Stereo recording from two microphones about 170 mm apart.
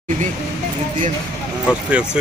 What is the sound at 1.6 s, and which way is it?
Speech, 5° right (ahead or behind).